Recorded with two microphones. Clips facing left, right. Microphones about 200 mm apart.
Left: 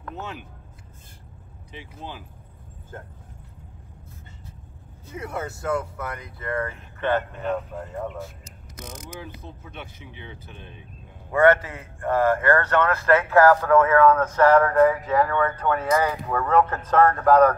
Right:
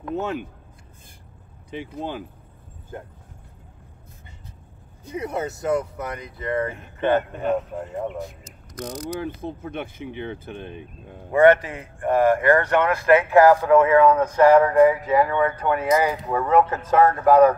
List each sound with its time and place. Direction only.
0.1 s speech: 50° right (ahead or behind)
2.0 s speech: 55° right (ahead or behind)
2.9 s speech: 15° right (ahead or behind)
5.0 s speech: 20° right (ahead or behind)
9.2 s speech: 55° right (ahead or behind)
11.3 s speech: 15° right (ahead or behind)